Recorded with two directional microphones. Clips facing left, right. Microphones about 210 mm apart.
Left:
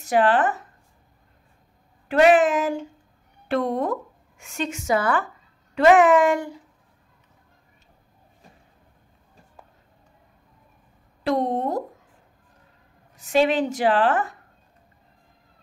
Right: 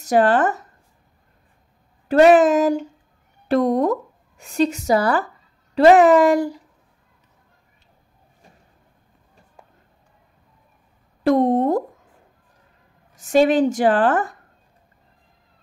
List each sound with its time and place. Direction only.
0.0 s a woman's voice: 45° right (ahead or behind)
2.0 s a woman's voice: 40° right (ahead or behind)
11.2 s a woman's voice: 50° right (ahead or behind)
13.1 s a woman's voice: 45° right (ahead or behind)